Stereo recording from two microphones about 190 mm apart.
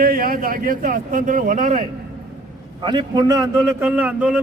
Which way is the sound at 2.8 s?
25° right (ahead or behind).